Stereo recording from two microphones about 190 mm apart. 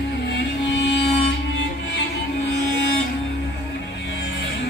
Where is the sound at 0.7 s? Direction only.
65° left (ahead or behind).